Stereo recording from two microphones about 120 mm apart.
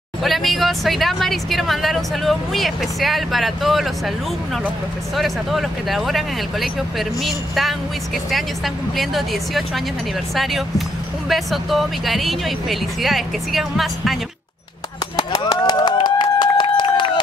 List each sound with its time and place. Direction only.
0.2 s speech: centre (ahead or behind)
5.1 s speech: centre (ahead or behind)
15.1 s a sound: 30° left (ahead or behind)